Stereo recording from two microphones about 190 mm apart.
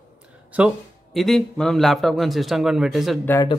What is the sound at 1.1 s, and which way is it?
A man's voice, centre (ahead or behind).